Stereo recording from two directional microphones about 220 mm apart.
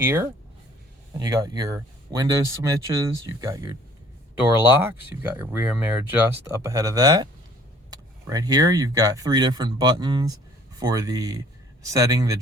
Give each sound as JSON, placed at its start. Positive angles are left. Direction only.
{"t": 0.0, "sound": "speech", "side_deg": -10}